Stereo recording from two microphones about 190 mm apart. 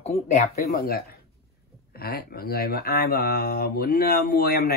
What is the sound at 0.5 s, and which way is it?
Speech, 55° left (ahead or behind).